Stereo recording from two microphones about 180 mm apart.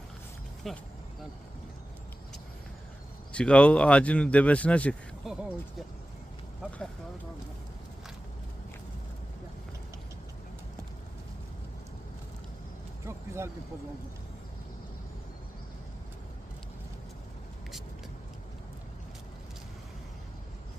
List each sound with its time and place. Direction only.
0.7 s speech: centre (ahead or behind)
3.3 s speech: 5° left (ahead or behind)
13.1 s vehicle: 15° right (ahead or behind)